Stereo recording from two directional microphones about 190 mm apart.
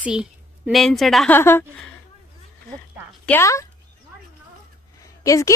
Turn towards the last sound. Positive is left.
turn(degrees=15)  # may be behind; listen again after turning